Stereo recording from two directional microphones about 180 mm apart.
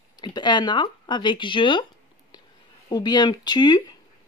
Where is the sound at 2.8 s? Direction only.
25° left (ahead or behind).